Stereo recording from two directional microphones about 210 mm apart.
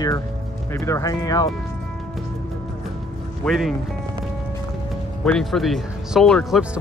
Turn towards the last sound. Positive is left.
turn(degrees=0)  # may be behind; listen again after turning